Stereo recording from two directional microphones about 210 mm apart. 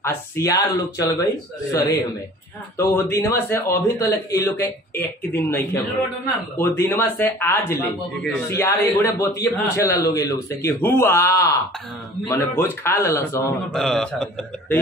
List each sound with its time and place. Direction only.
0.0 s speech: 15° left (ahead or behind)
2.8 s a man's voice: 10° left (ahead or behind)